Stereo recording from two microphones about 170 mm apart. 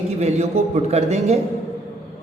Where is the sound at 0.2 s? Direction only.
40° right (ahead or behind).